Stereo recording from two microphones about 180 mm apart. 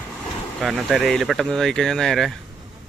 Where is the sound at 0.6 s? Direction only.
Centre (ahead or behind).